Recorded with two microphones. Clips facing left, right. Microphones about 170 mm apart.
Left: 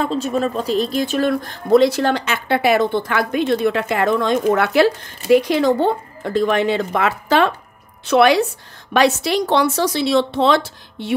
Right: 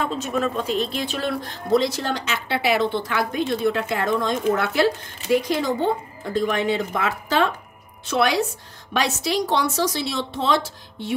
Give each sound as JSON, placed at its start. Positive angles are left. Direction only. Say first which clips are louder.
{"t": 0.0, "sound": "a woman's voice", "louder": "left 4 dB", "side_deg": 30}